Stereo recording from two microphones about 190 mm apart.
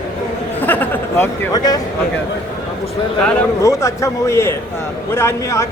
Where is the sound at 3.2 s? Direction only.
10° left (ahead or behind).